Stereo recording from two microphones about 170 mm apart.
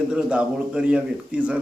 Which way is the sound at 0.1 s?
5° right (ahead or behind).